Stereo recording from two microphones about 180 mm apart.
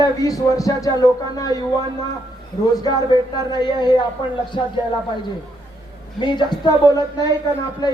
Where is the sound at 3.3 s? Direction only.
25° left (ahead or behind).